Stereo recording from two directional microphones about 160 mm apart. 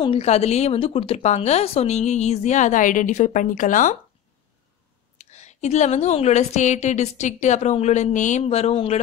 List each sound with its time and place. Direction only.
0.0 s a woman's voice: 40° left (ahead or behind)
5.1 s a woman's voice: 45° left (ahead or behind)